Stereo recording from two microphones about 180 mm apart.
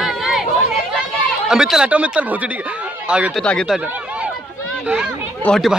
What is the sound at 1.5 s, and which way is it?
Speech, 5° right (ahead or behind).